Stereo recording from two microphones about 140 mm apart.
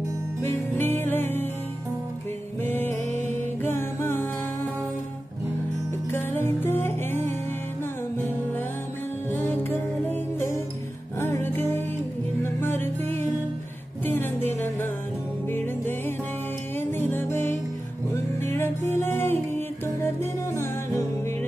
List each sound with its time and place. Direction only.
0.4 s music: 15° left (ahead or behind)
2.6 s music: 15° left (ahead or behind)
6.1 s music: 15° left (ahead or behind)
9.3 s music: 15° left (ahead or behind)